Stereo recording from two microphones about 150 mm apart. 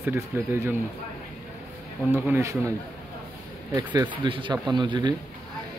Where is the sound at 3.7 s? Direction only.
30° right (ahead or behind).